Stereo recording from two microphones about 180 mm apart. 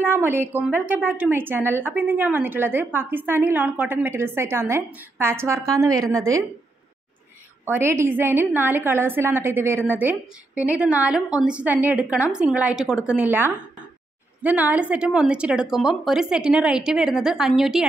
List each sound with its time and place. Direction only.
0.0 s a woman's voice: 10° right (ahead or behind)
7.6 s a woman's voice: 10° right (ahead or behind)